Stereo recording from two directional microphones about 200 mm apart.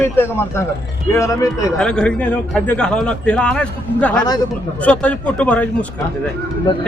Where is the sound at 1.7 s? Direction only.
5° left (ahead or behind).